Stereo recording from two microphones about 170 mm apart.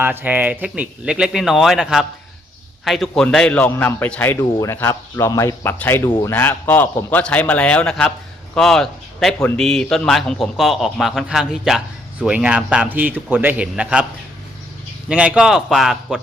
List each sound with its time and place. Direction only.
0.0 s a man's voice: 10° right (ahead or behind); by 6.1 s 15° left (ahead or behind)
6.1 s speech: 25° left (ahead or behind)
6.3 s a man's voice: 10° left (ahead or behind); by 14.1 s 5° right (ahead or behind)
15.1 s a man's voice: 5° right (ahead or behind)